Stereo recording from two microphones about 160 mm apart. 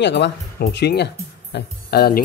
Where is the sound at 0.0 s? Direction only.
90° left.